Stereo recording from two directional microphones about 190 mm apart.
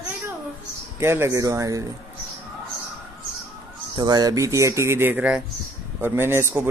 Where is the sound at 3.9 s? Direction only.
20° right (ahead or behind).